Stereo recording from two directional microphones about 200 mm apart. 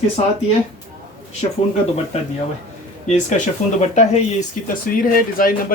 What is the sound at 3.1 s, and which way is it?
Speech, 35° left (ahead or behind).